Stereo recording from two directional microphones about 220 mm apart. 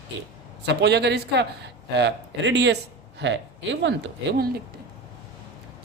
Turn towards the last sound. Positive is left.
turn(degrees=-45)  # may be behind; listen again after turning